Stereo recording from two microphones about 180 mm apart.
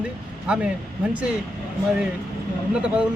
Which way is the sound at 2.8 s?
5° right (ahead or behind).